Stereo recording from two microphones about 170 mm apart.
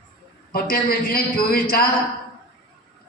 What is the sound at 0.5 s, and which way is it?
A man's voice, 60° left (ahead or behind).